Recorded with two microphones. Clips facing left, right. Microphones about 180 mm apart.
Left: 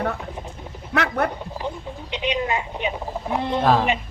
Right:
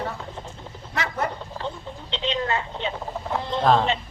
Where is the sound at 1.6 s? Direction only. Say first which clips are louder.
Left 2 dB; 15° left (ahead or behind).